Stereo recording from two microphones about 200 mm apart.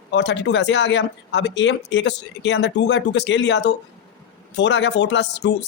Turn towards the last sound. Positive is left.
turn(degrees=60)  # may be behind; listen again after turning